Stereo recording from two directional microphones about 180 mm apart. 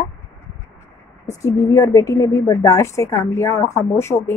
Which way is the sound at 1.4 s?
15° left (ahead or behind).